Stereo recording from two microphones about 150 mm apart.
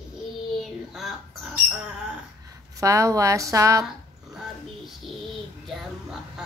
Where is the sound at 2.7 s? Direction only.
20° right (ahead or behind).